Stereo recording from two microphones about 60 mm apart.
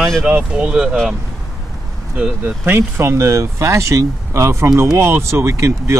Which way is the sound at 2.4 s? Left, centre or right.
Right.